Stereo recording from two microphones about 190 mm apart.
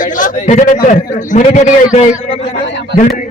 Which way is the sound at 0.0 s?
45° left (ahead or behind).